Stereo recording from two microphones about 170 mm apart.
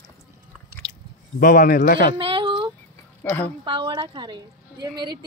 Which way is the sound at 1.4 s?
55° left (ahead or behind).